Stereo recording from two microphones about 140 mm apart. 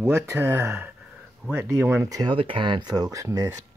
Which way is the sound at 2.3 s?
40° right (ahead or behind).